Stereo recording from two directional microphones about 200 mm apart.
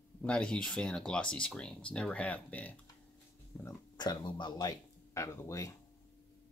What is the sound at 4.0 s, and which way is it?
Speech, 20° left (ahead or behind).